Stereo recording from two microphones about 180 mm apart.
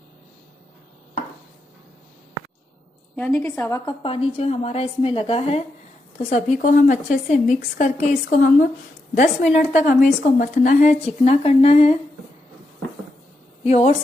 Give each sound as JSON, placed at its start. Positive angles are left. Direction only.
{"t": 3.2, "sound": "a woman's voice", "side_deg": 10}
{"t": 4.0, "sound": "speech", "side_deg": 30}
{"t": 6.6, "sound": "a woman's voice", "side_deg": 45}
{"t": 13.7, "sound": "speech", "side_deg": 35}